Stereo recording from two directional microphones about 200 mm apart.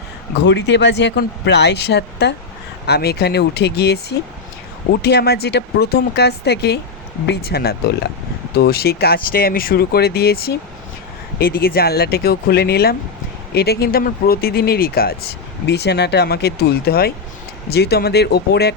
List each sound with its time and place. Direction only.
0.4 s speech: 60° left (ahead or behind)